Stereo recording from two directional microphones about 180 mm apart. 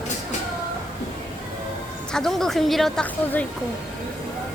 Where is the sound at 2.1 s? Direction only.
Centre (ahead or behind).